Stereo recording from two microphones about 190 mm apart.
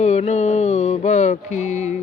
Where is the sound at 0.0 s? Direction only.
35° left (ahead or behind).